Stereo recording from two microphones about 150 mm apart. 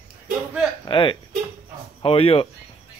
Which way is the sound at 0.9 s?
35° left (ahead or behind).